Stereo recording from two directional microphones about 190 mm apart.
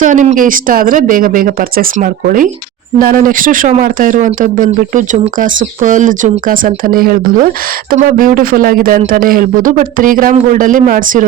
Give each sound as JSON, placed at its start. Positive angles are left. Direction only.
{"t": 0.0, "sound": "speech", "side_deg": -40}